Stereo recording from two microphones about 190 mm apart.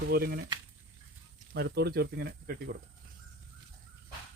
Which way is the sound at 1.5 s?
60° right (ahead or behind).